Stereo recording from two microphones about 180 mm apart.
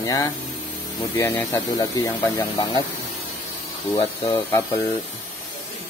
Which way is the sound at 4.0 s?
35° left (ahead or behind).